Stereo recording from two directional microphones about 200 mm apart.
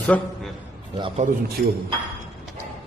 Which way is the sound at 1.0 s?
25° right (ahead or behind).